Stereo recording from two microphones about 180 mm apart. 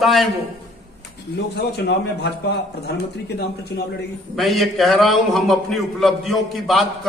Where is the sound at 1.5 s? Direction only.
70° left (ahead or behind).